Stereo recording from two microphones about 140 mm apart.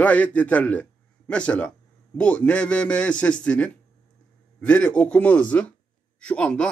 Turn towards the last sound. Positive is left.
turn(degrees=5)  # may be behind; listen again after turning